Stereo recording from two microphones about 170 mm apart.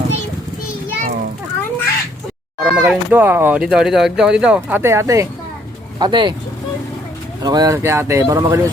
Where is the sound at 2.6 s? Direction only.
5° right (ahead or behind); by 6.4 s 30° right (ahead or behind).